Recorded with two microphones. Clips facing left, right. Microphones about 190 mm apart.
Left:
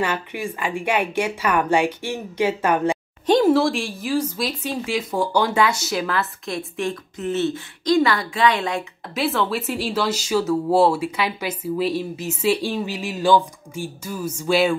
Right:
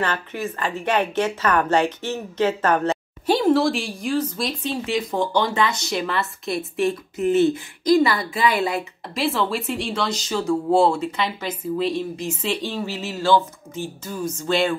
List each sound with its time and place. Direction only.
0.0 s a woman's voice: 10° left (ahead or behind)
3.4 s speech: centre (ahead or behind)